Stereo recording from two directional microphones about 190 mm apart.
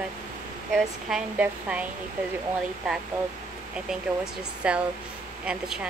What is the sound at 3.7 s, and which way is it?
Speech, 5° right (ahead or behind).